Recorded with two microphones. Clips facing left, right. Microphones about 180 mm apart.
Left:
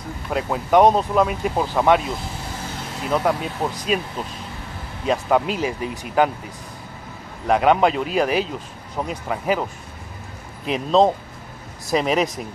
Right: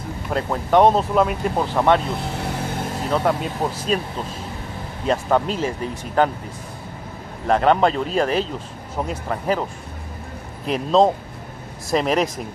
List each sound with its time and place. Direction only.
0.3 s speech: 5° left (ahead or behind)
2.7 s vehicle: 50° right (ahead or behind)
3.1 s speech: 5° left (ahead or behind)
5.0 s speech: 5° left (ahead or behind)
7.4 s speech: 5° left (ahead or behind)
8.9 s speech: 5° right (ahead or behind)
9.3 s speech: 5° left (ahead or behind)